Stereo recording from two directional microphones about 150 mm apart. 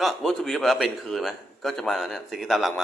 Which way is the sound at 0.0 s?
Centre (ahead or behind).